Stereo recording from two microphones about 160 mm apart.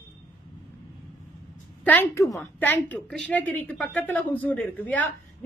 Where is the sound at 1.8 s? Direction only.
10° left (ahead or behind).